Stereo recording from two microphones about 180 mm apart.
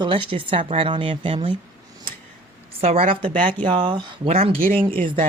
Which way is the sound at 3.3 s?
10° left (ahead or behind).